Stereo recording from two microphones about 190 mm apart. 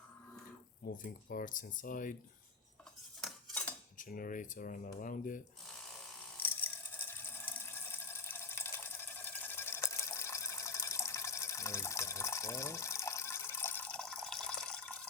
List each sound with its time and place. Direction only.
1.0 s speech: 45° left (ahead or behind)
3.2 s cutlery: centre (ahead or behind)
3.9 s speech: 45° left (ahead or behind)
6.3 s ratchet: 10° left (ahead or behind)